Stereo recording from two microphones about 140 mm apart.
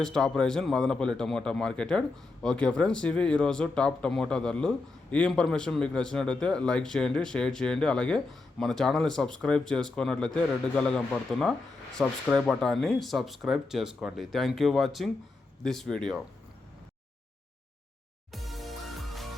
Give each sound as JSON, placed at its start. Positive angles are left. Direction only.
{"t": 0.0, "sound": "a man's voice", "side_deg": 5}
{"t": 18.3, "sound": "music", "side_deg": 0}